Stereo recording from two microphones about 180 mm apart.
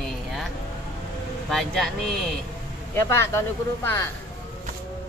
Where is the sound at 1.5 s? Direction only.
Centre (ahead or behind).